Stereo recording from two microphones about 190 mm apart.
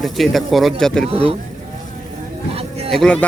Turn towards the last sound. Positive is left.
turn(degrees=5)  # may be behind; listen again after turning